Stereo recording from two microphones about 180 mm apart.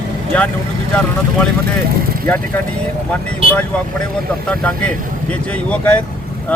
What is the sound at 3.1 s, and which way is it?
Speech, 10° left (ahead or behind).